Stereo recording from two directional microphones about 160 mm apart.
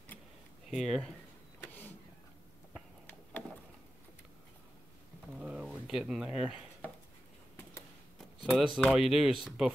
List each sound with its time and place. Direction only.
0.7 s speech: centre (ahead or behind)
1.6 s vehicle: 10° left (ahead or behind)
5.4 s a sound: 5° right (ahead or behind)
8.5 s speech: 5° right (ahead or behind)